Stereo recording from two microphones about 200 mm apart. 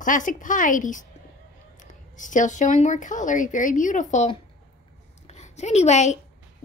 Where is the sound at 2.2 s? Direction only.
40° left (ahead or behind).